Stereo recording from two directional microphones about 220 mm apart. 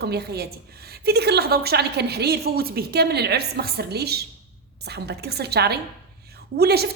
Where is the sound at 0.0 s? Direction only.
45° right (ahead or behind).